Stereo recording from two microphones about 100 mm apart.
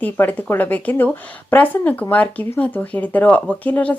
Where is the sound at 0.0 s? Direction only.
15° left (ahead or behind).